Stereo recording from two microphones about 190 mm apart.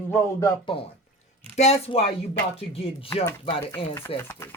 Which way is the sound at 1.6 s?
35° left (ahead or behind).